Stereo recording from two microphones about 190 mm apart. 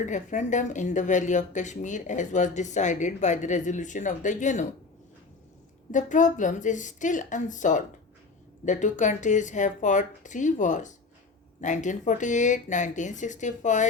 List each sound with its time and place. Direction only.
0.0 s speech: 40° left (ahead or behind)
5.9 s speech: 40° left (ahead or behind)